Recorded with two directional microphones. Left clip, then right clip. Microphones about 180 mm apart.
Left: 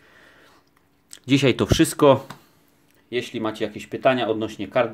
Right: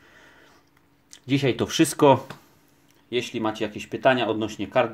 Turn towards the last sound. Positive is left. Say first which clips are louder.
# left 1 dB
turn(degrees=5)  # may be behind; listen again after turning